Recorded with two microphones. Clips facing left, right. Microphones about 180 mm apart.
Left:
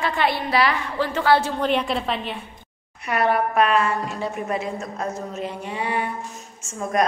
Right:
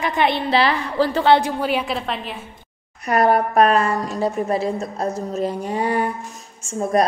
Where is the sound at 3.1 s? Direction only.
40° right (ahead or behind).